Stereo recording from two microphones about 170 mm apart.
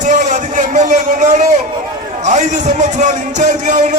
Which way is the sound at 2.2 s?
45° right (ahead or behind).